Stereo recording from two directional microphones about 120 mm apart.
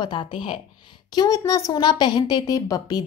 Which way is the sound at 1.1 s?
30° left (ahead or behind).